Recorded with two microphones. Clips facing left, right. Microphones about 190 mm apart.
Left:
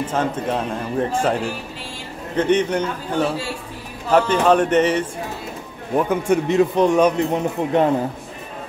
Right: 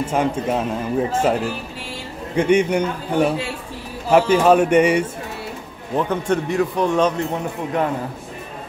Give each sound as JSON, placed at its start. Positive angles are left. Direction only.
{"t": 0.0, "sound": "speech", "side_deg": -10}
{"t": 5.9, "sound": "a man's voice", "side_deg": 10}
{"t": 6.4, "sound": "a man's voice", "side_deg": 20}